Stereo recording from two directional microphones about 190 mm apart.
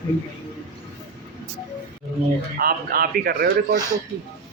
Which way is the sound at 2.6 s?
50° right (ahead or behind).